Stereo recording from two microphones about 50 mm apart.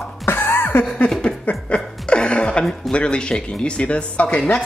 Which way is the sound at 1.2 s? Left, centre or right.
Left.